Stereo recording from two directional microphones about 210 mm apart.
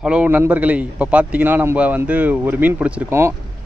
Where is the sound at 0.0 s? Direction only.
5° right (ahead or behind).